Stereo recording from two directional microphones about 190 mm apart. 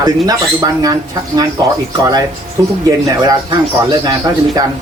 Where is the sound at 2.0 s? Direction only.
20° right (ahead or behind).